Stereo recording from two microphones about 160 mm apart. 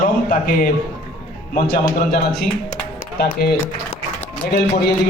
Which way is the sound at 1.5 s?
70° left (ahead or behind).